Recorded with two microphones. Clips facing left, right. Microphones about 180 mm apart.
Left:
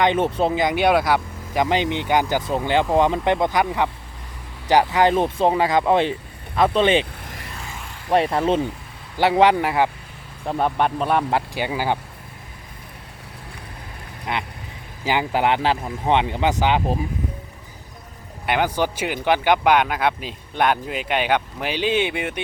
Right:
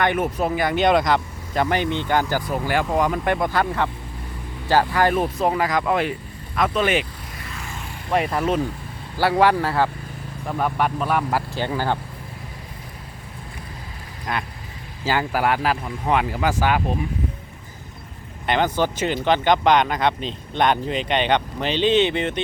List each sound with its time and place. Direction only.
0.0 s speech: 25° left (ahead or behind)
8.1 s speech: 30° left (ahead or behind)
11.5 s speech: 10° left (ahead or behind)
14.3 s speech: 20° left (ahead or behind)
18.4 s speech: 10° left (ahead or behind)